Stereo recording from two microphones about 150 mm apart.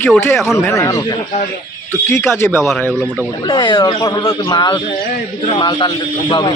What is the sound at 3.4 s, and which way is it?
A man's voice, 30° left (ahead or behind).